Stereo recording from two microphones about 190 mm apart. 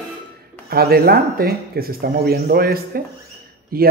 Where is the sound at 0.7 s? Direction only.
55° right (ahead or behind).